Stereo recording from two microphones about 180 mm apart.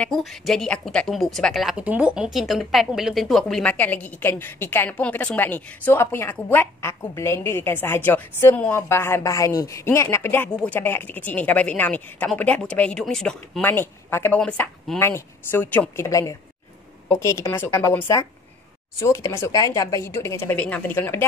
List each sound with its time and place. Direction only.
0.0 s a woman's voice: centre (ahead or behind)